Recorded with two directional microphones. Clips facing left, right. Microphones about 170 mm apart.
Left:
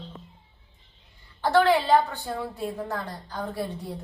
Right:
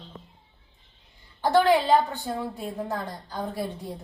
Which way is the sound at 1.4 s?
15° right (ahead or behind).